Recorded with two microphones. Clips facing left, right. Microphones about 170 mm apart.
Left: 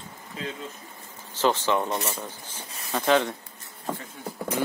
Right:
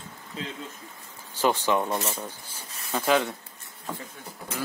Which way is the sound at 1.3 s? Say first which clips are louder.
Even; 15° right (ahead or behind).